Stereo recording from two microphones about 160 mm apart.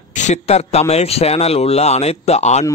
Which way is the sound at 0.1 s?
50° left (ahead or behind).